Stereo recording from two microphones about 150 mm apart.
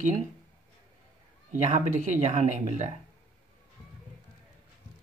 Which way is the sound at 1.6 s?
50° right (ahead or behind).